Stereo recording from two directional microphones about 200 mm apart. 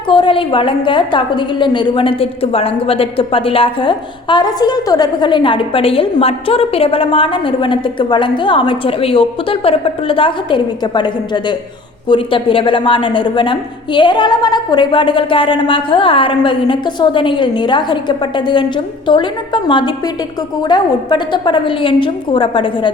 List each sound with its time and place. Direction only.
0.1 s a woman's voice: 25° left (ahead or behind)